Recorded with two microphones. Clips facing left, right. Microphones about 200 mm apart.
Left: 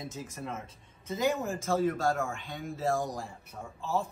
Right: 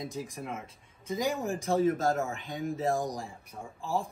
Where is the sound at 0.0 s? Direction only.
15° right (ahead or behind).